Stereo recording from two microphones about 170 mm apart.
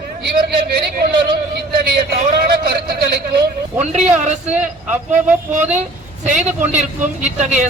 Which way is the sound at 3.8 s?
45° right (ahead or behind).